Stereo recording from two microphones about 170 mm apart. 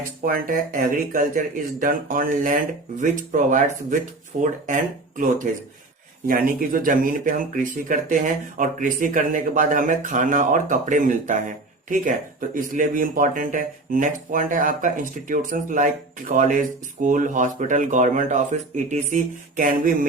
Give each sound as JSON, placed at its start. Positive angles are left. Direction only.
{"t": 0.3, "sound": "speech", "side_deg": -55}